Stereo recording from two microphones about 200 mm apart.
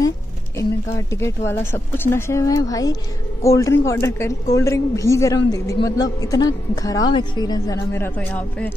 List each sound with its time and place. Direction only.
0.6 s a woman's voice: 15° left (ahead or behind)